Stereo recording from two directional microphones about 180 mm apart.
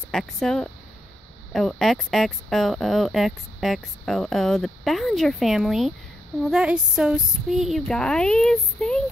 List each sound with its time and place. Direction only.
0.1 s speech: centre (ahead or behind)